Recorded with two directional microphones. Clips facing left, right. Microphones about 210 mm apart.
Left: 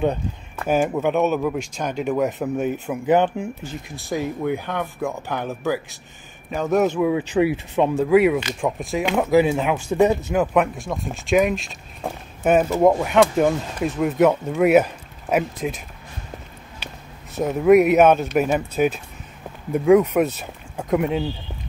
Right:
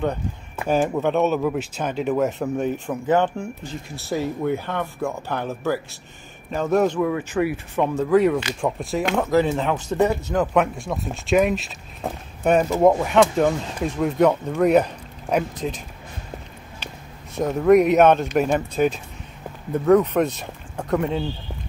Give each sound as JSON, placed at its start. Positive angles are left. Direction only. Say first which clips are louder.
{"t": 0.7, "sound": "speech", "louder": "left 1 dB", "side_deg": 0}
{"t": 3.1, "sound": "speech", "louder": "left 2 dB", "side_deg": 15}
{"t": 4.1, "sound": "speech", "louder": "even", "side_deg": 0}
{"t": 7.0, "sound": "speech", "louder": "left 3 dB", "side_deg": 15}
{"t": 9.2, "sound": "speech", "louder": "left 4 dB", "side_deg": 10}
{"t": 10.4, "sound": "speech", "louder": "left 1 dB", "side_deg": 0}
{"t": 17.4, "sound": "speech", "louder": "left 1 dB", "side_deg": 5}